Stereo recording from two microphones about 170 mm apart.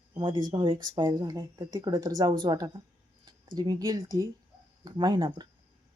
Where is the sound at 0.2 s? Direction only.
25° right (ahead or behind).